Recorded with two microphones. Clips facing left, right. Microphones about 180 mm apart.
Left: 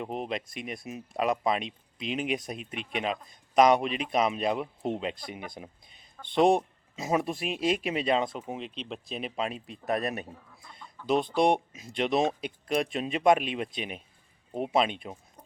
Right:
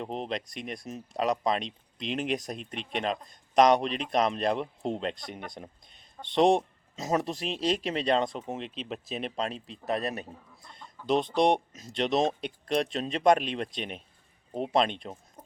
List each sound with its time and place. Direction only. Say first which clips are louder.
0.0 s speech: even; 5° left (ahead or behind)
9.8 s a man's voice: left 1 dB; 35° right (ahead or behind)
10.6 s chicken: even; 5° left (ahead or behind)
11.0 s speech: even; 5° left (ahead or behind)